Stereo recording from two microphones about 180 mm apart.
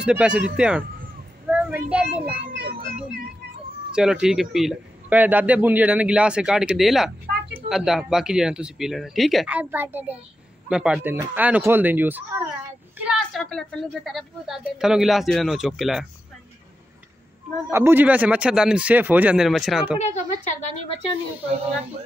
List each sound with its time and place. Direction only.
0.0 s a man's voice: 5° right (ahead or behind)
2.5 s a sound: 60° right (ahead or behind)
3.9 s a man's voice: 5° right (ahead or behind)
13.0 s a man's voice: centre (ahead or behind)
17.6 s speech: 10° right (ahead or behind)
20.0 s a woman's voice: 40° left (ahead or behind)